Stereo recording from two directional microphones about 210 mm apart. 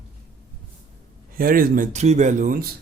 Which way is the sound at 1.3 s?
45° right (ahead or behind).